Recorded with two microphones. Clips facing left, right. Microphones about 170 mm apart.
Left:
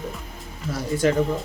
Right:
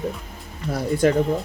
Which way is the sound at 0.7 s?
55° right (ahead or behind).